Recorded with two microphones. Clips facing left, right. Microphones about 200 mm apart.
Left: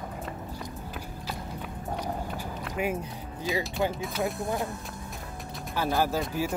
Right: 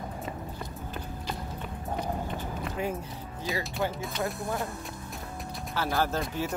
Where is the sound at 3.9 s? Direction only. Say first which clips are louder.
Left 2 dB; centre (ahead or behind).